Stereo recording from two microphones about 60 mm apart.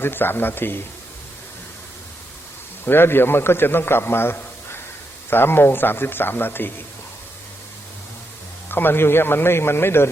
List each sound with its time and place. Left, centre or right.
0.0 s a man's voice: left
2.8 s a man's voice: left
8.7 s a man's voice: left